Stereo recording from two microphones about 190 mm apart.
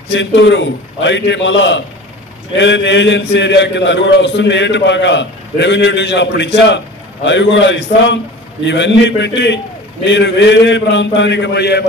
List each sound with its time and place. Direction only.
0.1 s a man's voice: 70° left (ahead or behind)